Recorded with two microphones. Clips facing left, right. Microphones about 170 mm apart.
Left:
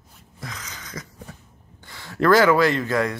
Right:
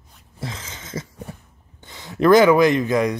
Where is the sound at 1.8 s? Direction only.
20° right (ahead or behind).